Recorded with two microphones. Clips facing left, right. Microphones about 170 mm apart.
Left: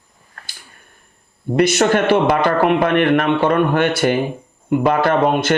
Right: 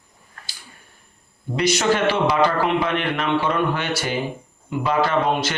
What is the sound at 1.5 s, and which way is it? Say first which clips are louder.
A man's voice: left 5 dB; 55° left (ahead or behind).